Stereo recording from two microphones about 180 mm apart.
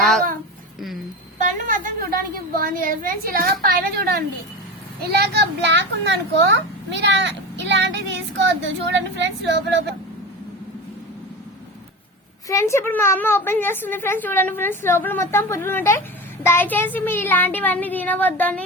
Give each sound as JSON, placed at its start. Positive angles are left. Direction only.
{"t": 1.4, "sound": "a woman's voice", "side_deg": -45}
{"t": 12.5, "sound": "a woman's voice", "side_deg": 15}